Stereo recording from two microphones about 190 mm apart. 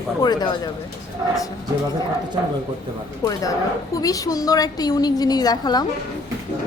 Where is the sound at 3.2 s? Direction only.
20° left (ahead or behind).